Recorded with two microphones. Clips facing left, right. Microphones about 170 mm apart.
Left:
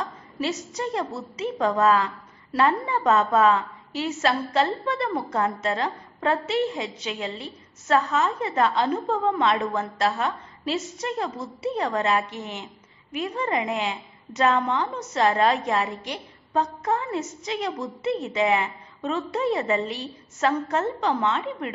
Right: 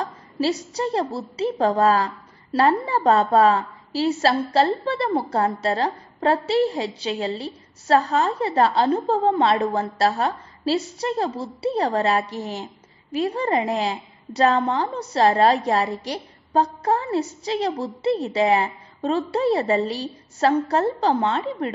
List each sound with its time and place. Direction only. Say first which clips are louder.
0.0 s a woman's voice: right 5 dB; 35° right (ahead or behind)